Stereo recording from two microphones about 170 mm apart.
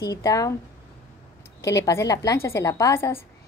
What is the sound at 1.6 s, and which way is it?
A woman's voice, 20° left (ahead or behind).